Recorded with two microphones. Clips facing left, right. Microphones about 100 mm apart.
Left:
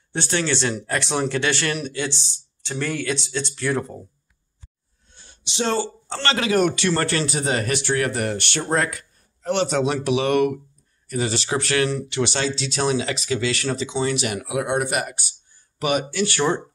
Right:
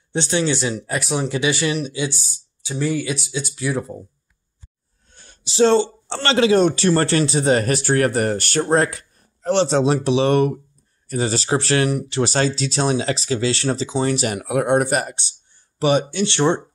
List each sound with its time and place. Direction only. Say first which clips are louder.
0.1 s speech: right 3 dB; 20° right (ahead or behind)
0.5 s speech: right 1 dB; 10° right (ahead or behind)
5.1 s a sound: right 2 dB; 50° right (ahead or behind)
5.4 s speech: right 8 dB; 35° right (ahead or behind)